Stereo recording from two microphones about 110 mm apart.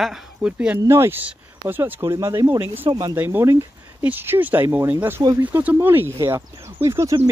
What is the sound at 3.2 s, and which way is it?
Speech, 20° right (ahead or behind).